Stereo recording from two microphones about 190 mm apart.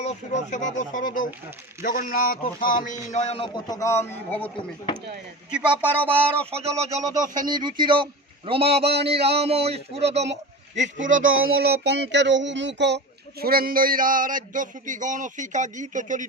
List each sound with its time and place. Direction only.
0.0 s speech: 40° left (ahead or behind); by 4.5 s 10° left (ahead or behind)
5.5 s speech: 5° right (ahead or behind)
6.7 s speech: 20° right (ahead or behind); by 11.2 s 40° right (ahead or behind)
11.2 s a sound: 90° right
11.4 s music: 55° right (ahead or behind)
13.4 s a sound: 50° right (ahead or behind)